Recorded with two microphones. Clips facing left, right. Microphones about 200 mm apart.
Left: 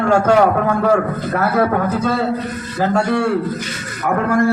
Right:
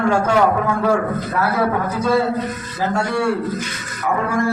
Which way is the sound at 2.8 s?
60° left (ahead or behind).